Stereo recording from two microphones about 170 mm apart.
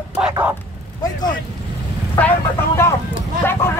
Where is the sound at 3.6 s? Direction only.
15° left (ahead or behind).